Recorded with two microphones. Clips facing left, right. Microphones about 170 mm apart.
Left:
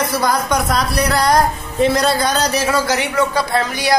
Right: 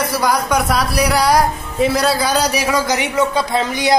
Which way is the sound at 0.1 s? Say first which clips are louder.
Right 1 dB; 10° right (ahead or behind).